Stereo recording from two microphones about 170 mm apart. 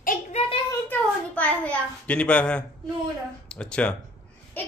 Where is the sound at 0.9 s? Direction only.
10° left (ahead or behind).